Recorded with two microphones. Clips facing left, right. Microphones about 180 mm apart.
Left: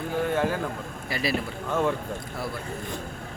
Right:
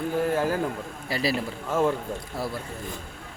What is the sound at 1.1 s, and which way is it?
Speech, 35° right (ahead or behind).